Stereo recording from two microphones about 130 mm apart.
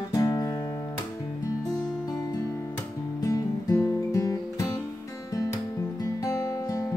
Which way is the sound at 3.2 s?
25° left (ahead or behind).